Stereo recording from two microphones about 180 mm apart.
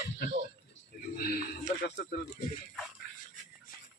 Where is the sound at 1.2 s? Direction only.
55° left (ahead or behind).